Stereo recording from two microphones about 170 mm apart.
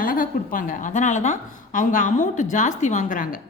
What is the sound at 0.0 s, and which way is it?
A woman's voice, 55° left (ahead or behind).